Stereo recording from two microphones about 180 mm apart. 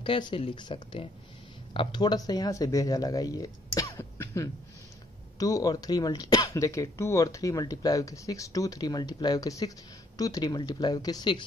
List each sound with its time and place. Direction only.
0.0 s speech: 30° left (ahead or behind)